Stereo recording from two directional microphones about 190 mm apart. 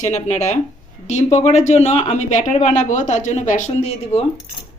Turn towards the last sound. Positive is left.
turn(degrees=35)  # may be behind; listen again after turning